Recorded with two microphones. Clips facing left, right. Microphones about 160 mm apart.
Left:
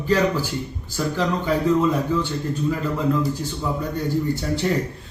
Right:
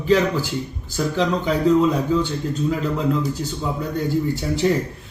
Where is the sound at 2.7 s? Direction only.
20° right (ahead or behind).